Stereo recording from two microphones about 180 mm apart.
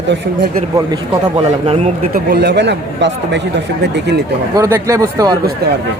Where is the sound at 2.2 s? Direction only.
65° right (ahead or behind).